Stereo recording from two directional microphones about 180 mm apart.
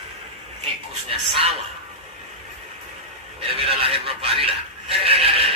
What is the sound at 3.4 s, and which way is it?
Speech, 30° right (ahead or behind).